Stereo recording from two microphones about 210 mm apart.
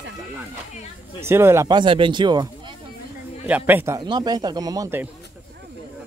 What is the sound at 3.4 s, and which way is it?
A man's voice, 10° right (ahead or behind).